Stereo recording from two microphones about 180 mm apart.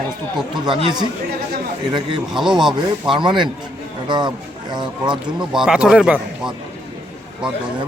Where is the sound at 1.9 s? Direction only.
25° right (ahead or behind).